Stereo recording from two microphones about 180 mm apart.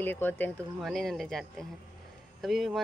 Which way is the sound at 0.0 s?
10° left (ahead or behind).